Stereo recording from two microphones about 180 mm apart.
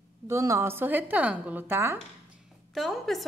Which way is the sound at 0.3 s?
15° right (ahead or behind).